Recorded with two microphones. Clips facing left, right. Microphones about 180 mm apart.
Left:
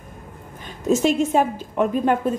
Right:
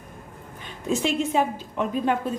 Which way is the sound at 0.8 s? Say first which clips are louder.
Left 6 dB; 45° left (ahead or behind).